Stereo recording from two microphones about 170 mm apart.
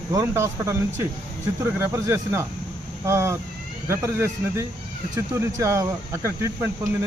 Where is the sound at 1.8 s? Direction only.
15° right (ahead or behind).